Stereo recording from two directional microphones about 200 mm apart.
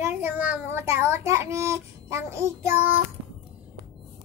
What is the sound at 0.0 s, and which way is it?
A child's voice, 10° right (ahead or behind).